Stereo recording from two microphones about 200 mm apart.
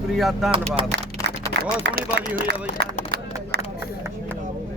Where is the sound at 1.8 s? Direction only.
60° right (ahead or behind).